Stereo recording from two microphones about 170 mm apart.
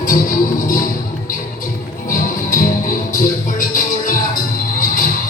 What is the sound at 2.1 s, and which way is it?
Music, 50° left (ahead or behind).